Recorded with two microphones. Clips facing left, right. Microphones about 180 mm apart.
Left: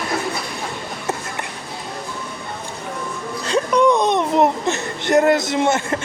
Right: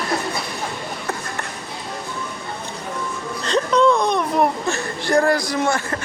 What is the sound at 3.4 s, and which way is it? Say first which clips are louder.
Speech: left 1 dB; 10° left (ahead or behind).